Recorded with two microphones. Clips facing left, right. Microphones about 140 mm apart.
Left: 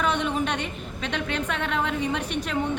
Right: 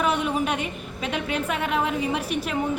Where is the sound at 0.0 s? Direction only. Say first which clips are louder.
Right 1 dB; 10° right (ahead or behind).